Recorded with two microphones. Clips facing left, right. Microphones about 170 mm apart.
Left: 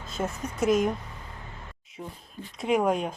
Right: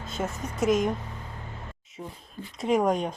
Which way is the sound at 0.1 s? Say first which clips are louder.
Left 1 dB; centre (ahead or behind).